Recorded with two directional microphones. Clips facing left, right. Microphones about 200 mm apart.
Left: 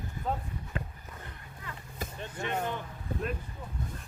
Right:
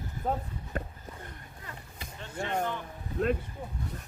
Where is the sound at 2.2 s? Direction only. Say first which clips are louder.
Right 2 dB; 15° left (ahead or behind).